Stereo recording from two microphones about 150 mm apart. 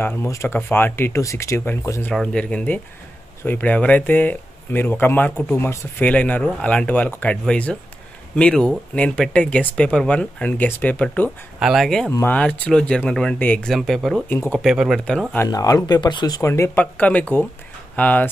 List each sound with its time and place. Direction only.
0.0 s speech: 15° left (ahead or behind)
2.1 s speech: 5° left (ahead or behind)
11.6 s speech: centre (ahead or behind)
12.1 s speech: 15° left (ahead or behind)
14.3 s speech: 15° left (ahead or behind)
14.6 s speech: 5° right (ahead or behind)
15.3 s speech: 20° left (ahead or behind)